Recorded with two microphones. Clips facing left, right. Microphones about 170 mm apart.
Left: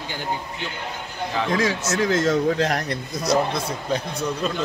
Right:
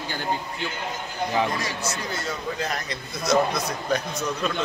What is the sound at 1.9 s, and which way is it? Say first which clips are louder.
Speech: left 10 dB; 90° left.